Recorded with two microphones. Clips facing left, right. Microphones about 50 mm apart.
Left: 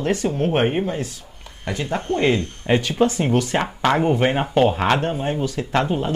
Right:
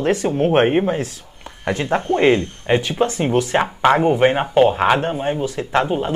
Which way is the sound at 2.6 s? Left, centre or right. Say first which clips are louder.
Even; centre.